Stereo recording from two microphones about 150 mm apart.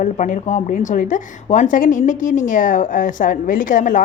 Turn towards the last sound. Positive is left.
turn(degrees=60)  # may be behind; listen again after turning